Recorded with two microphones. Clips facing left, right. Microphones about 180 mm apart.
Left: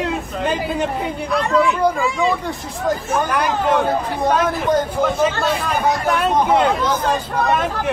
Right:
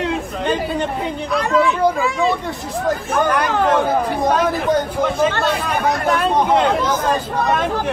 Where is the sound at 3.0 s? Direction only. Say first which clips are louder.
Right 1 dB; 60° right (ahead or behind).